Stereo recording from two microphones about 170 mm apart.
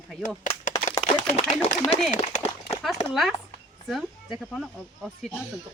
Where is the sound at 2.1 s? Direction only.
45° left (ahead or behind).